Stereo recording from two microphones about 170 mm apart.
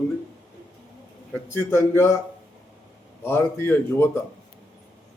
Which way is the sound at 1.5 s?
15° left (ahead or behind).